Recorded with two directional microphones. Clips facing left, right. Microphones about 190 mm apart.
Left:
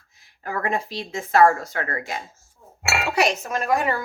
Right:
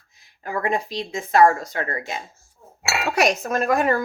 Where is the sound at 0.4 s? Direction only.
15° right (ahead or behind).